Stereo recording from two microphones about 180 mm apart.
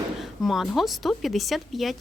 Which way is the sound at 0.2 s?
Centre (ahead or behind).